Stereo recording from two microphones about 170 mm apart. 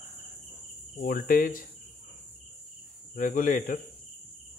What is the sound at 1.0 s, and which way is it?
Speech, 55° left (ahead or behind).